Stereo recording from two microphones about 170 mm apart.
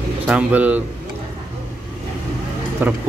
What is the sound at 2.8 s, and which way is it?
Speech, 10° right (ahead or behind).